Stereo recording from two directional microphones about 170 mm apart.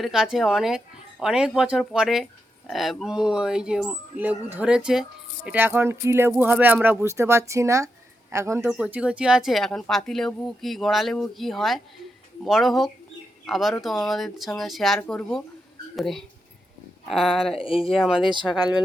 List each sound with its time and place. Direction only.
0.0 s speech: 5° right (ahead or behind)
17.4 s speech: 35° left (ahead or behind)
17.9 s speech: centre (ahead or behind)